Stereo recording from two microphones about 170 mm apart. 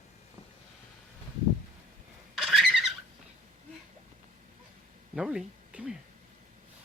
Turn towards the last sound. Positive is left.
turn(degrees=-5)  # may be behind; listen again after turning